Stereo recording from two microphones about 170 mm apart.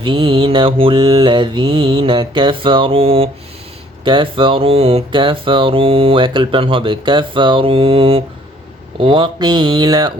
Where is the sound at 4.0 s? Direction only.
30° right (ahead or behind).